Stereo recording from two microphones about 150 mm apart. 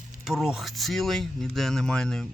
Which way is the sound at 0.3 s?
5° right (ahead or behind).